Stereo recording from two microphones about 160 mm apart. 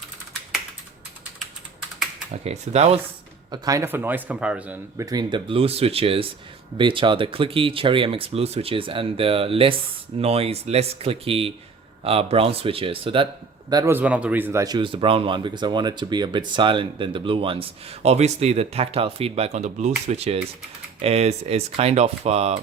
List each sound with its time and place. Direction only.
2.3 s speech: 40° right (ahead or behind)
3.5 s speech: 20° right (ahead or behind)
4.9 s a man's voice: 25° right (ahead or behind)
13.9 s speech: 10° right (ahead or behind); by 22.6 s 40° right (ahead or behind)